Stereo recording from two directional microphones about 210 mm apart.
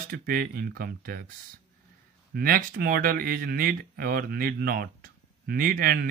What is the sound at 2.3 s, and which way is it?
Speech, 45° right (ahead or behind).